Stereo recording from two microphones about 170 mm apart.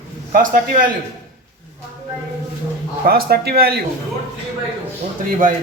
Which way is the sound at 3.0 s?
65° right (ahead or behind).